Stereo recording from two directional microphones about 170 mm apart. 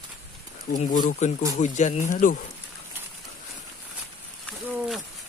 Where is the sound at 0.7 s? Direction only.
50° left (ahead or behind).